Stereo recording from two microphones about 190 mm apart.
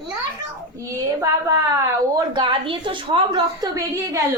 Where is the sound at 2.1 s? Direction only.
25° right (ahead or behind).